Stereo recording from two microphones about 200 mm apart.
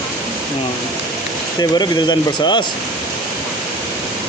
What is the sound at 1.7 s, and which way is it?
Speech, 20° left (ahead or behind).